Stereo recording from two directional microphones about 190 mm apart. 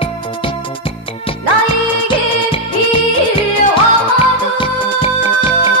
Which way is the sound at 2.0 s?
30° left (ahead or behind).